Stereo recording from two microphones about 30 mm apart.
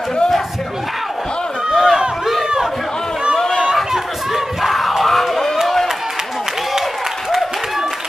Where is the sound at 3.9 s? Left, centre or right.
Centre.